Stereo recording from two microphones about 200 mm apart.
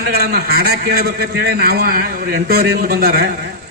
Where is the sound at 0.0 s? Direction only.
50° right (ahead or behind).